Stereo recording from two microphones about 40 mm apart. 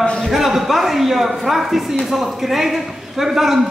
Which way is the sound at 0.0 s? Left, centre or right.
Left.